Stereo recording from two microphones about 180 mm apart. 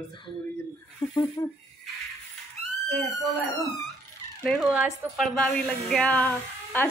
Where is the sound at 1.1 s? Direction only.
20° left (ahead or behind).